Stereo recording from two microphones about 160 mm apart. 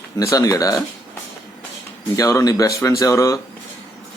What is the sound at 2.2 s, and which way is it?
A man's voice, 20° left (ahead or behind).